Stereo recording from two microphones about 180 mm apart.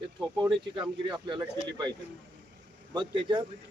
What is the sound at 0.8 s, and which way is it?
Speech, 25° right (ahead or behind).